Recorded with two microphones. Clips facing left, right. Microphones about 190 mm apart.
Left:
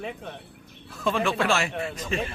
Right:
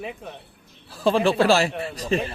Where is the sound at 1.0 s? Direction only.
30° right (ahead or behind).